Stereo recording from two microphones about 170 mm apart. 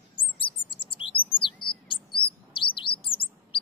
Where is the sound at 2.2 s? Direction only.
30° left (ahead or behind).